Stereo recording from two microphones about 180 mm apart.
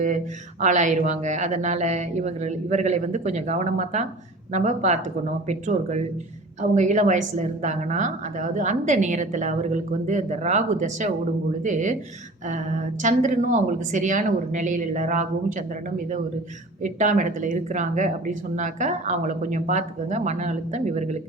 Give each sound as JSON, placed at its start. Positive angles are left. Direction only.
{"t": 0.6, "sound": "a woman's voice", "side_deg": -45}